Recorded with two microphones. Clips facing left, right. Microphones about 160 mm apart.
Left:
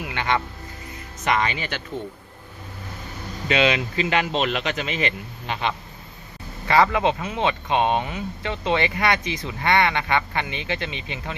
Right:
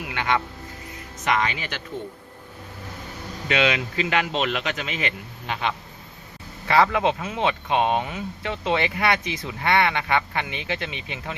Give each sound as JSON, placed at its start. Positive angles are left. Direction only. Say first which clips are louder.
{"t": 0.0, "sound": "music", "louder": "even", "side_deg": -5}
{"t": 1.2, "sound": "speech", "louder": "left 1 dB", "side_deg": 0}
{"t": 3.5, "sound": "speech", "louder": "left 2 dB", "side_deg": 0}